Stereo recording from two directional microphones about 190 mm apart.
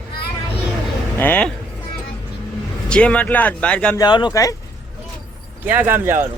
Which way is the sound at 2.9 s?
5° left (ahead or behind).